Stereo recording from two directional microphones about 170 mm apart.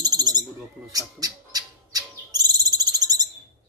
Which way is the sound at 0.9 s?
20° right (ahead or behind).